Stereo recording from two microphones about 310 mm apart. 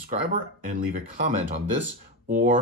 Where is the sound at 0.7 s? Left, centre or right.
Right.